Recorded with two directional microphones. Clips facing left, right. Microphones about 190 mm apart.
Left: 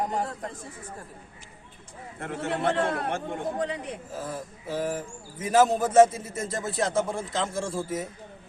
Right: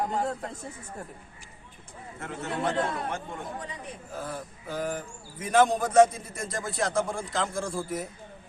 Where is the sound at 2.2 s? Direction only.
55° left (ahead or behind).